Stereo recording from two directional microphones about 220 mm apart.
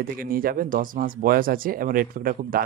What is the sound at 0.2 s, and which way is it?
Speech, 40° right (ahead or behind).